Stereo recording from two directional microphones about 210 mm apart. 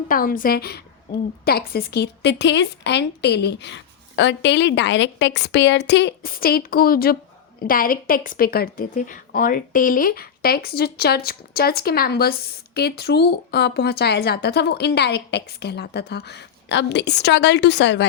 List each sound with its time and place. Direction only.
0.1 s a woman's voice: 40° left (ahead or behind)